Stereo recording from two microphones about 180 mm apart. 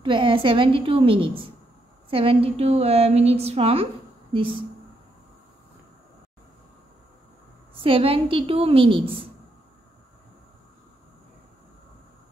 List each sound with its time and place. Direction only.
0.0 s a woman's voice: 25° right (ahead or behind)
7.8 s a woman's voice: 30° right (ahead or behind)